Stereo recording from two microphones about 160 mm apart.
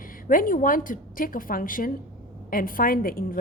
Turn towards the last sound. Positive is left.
turn(degrees=65)  # may be behind; listen again after turning